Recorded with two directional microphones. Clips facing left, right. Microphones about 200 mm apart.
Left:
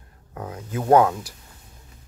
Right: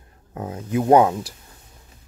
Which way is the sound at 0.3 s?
25° right (ahead or behind).